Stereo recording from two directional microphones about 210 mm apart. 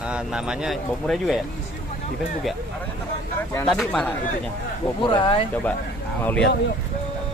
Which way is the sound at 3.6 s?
5° left (ahead or behind).